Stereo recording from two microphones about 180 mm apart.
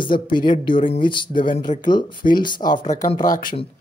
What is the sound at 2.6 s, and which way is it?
Speech, 40° left (ahead or behind).